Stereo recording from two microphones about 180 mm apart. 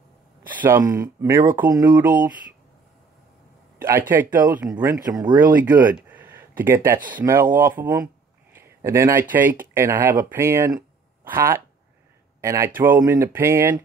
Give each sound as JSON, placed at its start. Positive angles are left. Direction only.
{"t": 0.5, "sound": "speech", "side_deg": -10}
{"t": 4.1, "sound": "speech", "side_deg": -10}
{"t": 8.5, "sound": "a sound", "side_deg": -15}
{"t": 9.3, "sound": "speech", "side_deg": -10}